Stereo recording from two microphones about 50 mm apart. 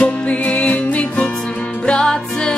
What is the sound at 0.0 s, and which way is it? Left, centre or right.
Music, left.